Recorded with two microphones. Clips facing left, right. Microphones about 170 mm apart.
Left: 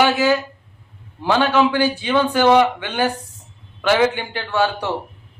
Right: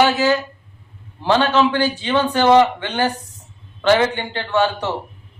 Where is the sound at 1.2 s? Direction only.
15° left (ahead or behind).